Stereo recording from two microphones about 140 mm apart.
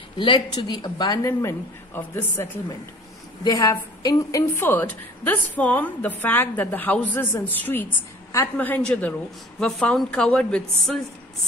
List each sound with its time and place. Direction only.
0.2 s speech: 30° left (ahead or behind); by 2.4 s 15° left (ahead or behind)
3.4 s a woman's voice: 30° left (ahead or behind); by 11.0 s 5° left (ahead or behind)